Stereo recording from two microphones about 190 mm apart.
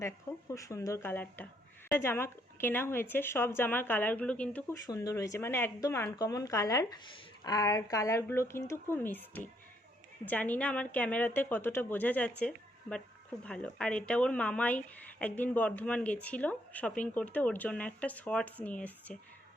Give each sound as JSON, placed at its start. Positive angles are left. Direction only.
{"t": 0.0, "sound": "speech", "side_deg": 15}